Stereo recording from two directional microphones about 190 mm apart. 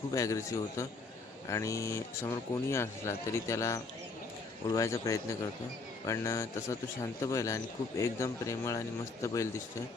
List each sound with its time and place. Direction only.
0.1 s a man's voice: 15° left (ahead or behind)